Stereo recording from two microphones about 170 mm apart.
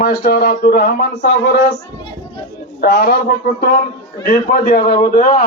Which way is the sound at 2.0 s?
30° left (ahead or behind).